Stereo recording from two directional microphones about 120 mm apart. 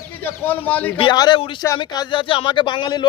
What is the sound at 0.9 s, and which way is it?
Speech, 45° left (ahead or behind).